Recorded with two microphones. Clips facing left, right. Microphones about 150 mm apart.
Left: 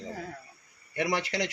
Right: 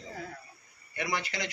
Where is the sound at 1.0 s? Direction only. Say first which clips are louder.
Left 5 dB; 75° left (ahead or behind).